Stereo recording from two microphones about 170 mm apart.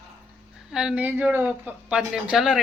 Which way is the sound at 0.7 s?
5° right (ahead or behind).